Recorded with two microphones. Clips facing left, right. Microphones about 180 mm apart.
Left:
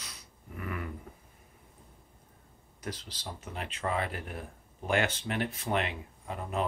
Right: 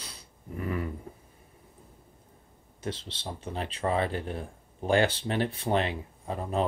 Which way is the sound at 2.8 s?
25° right (ahead or behind).